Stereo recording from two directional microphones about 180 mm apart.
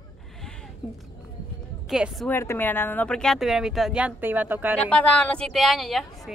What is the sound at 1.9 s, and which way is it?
Speech, centre (ahead or behind).